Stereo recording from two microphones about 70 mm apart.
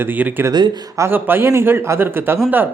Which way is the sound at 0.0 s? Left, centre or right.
Right.